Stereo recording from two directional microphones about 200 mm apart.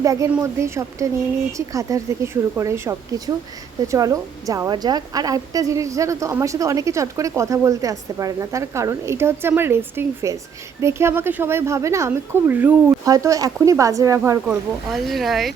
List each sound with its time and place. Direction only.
0.0 s a woman's voice: 15° right (ahead or behind)
14.4 s speech: centre (ahead or behind)